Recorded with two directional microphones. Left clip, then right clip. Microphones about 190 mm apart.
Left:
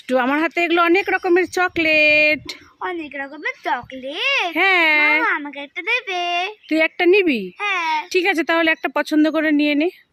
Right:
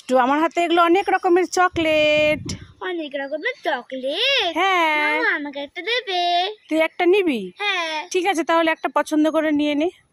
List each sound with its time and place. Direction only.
0.1 s a child's voice: 10° left (ahead or behind)
3.1 s a child's voice: 20° left (ahead or behind)
6.7 s a child's voice: 15° left (ahead or behind)